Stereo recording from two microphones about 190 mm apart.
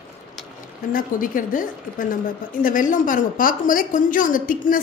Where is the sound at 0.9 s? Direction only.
45° left (ahead or behind).